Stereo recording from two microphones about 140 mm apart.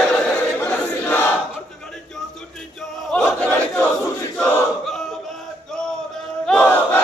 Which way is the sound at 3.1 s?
5° left (ahead or behind).